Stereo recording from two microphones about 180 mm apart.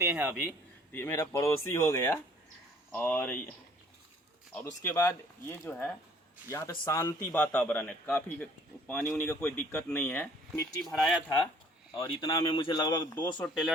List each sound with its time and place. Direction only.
0.0 s a man's voice: 10° right (ahead or behind)
0.9 s speech: 15° left (ahead or behind)
4.5 s speech: 10° left (ahead or behind)
10.9 s speech: centre (ahead or behind)
12.0 s speech: 25° left (ahead or behind)
13.4 s speech: centre (ahead or behind)